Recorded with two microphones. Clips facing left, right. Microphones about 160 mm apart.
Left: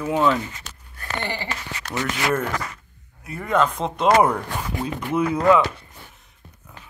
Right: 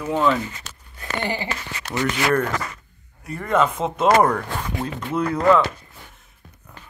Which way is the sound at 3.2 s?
Centre (ahead or behind).